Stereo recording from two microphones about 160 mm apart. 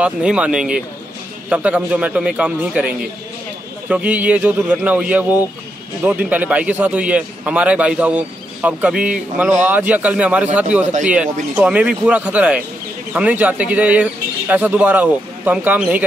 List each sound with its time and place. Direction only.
0.0 s a man's voice: 5° right (ahead or behind)
3.9 s a man's voice: 10° right (ahead or behind)